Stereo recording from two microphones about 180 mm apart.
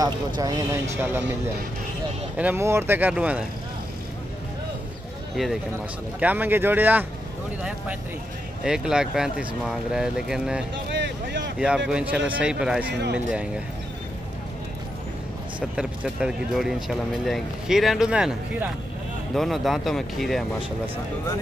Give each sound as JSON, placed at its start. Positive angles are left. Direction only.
{"t": 0.4, "sound": "speech", "side_deg": -20}
{"t": 2.3, "sound": "speech", "side_deg": -10}
{"t": 5.3, "sound": "speech", "side_deg": 0}
{"t": 8.6, "sound": "speech", "side_deg": -5}
{"t": 10.9, "sound": "a sound", "side_deg": -75}
{"t": 11.5, "sound": "speech", "side_deg": -5}
{"t": 12.9, "sound": "speech", "side_deg": -70}
{"t": 15.7, "sound": "speech", "side_deg": -5}